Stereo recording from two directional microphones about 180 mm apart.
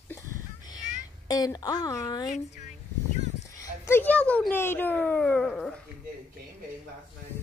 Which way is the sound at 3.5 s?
15° left (ahead or behind).